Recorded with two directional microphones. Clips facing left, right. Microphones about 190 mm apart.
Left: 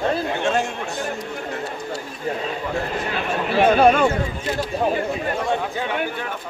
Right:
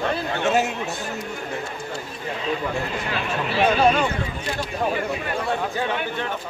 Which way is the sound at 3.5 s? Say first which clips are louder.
Left 4 dB; 50° left (ahead or behind).